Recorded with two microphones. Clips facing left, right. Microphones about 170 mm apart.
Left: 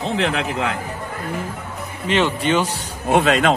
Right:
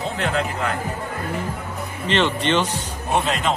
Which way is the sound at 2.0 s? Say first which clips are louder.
Left 2 dB; 10° left (ahead or behind).